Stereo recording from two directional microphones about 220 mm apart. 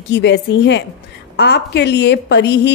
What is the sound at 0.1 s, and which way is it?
A woman's voice, 55° left (ahead or behind).